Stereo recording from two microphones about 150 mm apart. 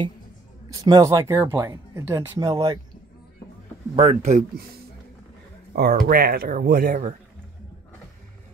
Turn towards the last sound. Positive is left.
turn(degrees=-75)  # may be behind; listen again after turning